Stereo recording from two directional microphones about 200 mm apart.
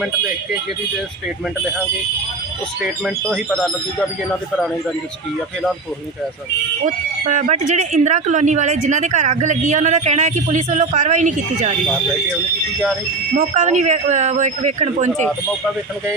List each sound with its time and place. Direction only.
2.8 s speech: centre (ahead or behind)
6.8 s speech: 35° right (ahead or behind)
13.3 s speech: 35° right (ahead or behind)